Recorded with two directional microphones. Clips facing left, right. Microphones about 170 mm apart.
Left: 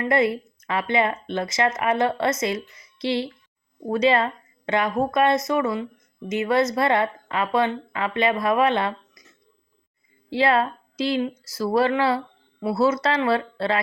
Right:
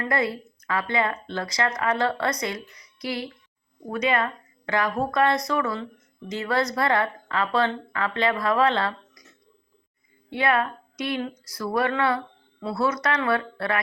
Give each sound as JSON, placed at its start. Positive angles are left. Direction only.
{"t": 0.0, "sound": "speech", "side_deg": 25}
{"t": 10.3, "sound": "speech", "side_deg": 30}